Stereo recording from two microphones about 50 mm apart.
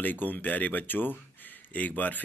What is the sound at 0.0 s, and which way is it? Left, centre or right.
Speech, left.